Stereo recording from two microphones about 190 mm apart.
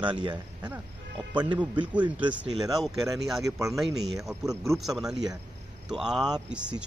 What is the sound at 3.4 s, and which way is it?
Speech, 15° right (ahead or behind).